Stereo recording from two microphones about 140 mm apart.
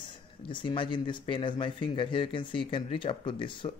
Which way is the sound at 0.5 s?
35° left (ahead or behind).